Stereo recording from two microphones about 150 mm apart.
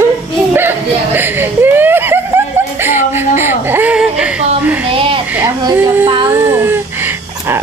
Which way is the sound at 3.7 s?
10° right (ahead or behind).